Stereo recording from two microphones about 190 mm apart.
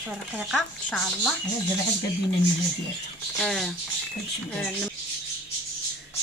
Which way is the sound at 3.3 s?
Centre (ahead or behind).